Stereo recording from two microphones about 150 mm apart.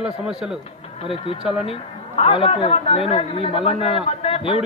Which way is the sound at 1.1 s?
35° left (ahead or behind).